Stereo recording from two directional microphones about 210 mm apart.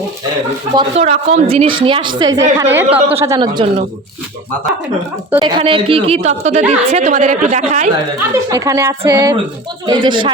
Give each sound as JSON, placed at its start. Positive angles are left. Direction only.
{"t": 0.8, "sound": "a woman's voice", "side_deg": -30}
{"t": 5.3, "sound": "a woman's voice", "side_deg": -20}
{"t": 8.4, "sound": "a woman's voice", "side_deg": -15}